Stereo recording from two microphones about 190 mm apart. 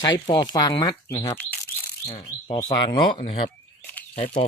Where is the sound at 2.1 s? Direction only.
35° left (ahead or behind).